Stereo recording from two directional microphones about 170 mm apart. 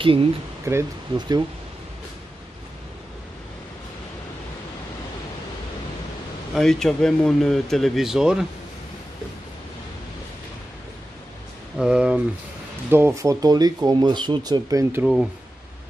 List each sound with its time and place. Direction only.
0.0 s speech: 30° right (ahead or behind)
0.7 s speech: 20° right (ahead or behind)
6.5 s speech: 5° left (ahead or behind)
11.8 s speech: 5° right (ahead or behind)